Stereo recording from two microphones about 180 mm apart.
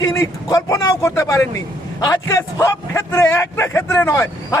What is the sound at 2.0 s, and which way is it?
Speech, 15° left (ahead or behind).